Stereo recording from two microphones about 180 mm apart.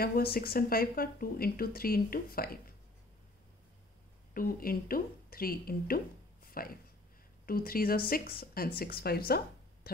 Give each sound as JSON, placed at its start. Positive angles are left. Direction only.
{"t": 0.0, "sound": "speech", "side_deg": 60}
{"t": 4.3, "sound": "speech", "side_deg": 55}
{"t": 6.4, "sound": "a sound", "side_deg": 55}
{"t": 7.4, "sound": "speech", "side_deg": 55}